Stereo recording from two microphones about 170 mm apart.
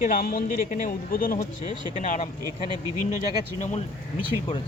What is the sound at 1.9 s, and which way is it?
Speech, 45° left (ahead or behind).